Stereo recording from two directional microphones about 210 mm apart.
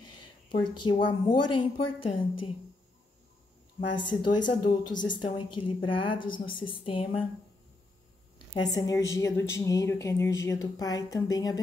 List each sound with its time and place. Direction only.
0.1 s a woman's voice: 25° left (ahead or behind)
4.1 s a woman's voice: 20° left (ahead or behind)
8.6 s a woman's voice: 15° left (ahead or behind)